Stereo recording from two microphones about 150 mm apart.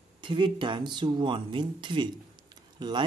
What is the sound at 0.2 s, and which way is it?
Speech, 35° right (ahead or behind).